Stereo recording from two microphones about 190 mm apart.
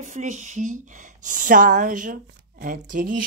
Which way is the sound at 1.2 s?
45° right (ahead or behind).